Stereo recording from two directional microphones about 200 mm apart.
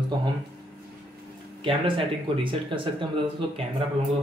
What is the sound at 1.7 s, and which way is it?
Speech, 25° right (ahead or behind).